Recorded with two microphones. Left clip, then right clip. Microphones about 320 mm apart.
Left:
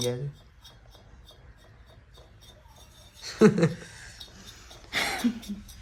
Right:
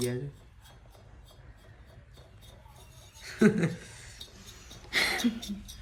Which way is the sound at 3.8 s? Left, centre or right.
Left.